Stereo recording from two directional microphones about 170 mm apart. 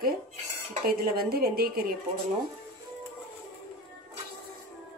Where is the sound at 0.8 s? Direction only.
60° right (ahead or behind).